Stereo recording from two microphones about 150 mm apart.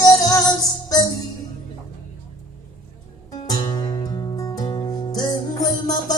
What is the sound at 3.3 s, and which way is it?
Music, 25° left (ahead or behind).